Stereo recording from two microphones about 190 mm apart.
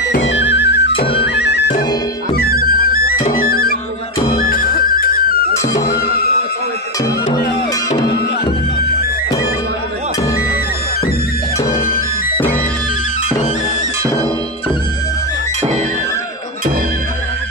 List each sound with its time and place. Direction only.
0.1 s music: 70° left (ahead or behind); by 5.5 s 50° left (ahead or behind)